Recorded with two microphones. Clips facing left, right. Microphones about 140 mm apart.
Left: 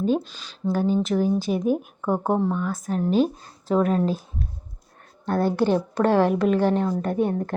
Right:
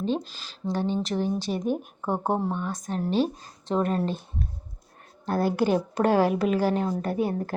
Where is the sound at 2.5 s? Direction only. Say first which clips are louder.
Left 4 dB; 25° right (ahead or behind).